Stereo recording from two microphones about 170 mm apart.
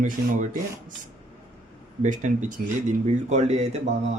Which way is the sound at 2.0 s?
45° right (ahead or behind).